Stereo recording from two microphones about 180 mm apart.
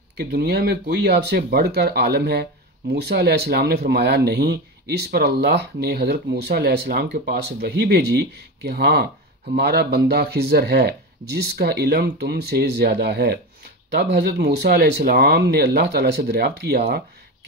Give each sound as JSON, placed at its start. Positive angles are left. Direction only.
{"t": 0.2, "sound": "speech", "side_deg": -60}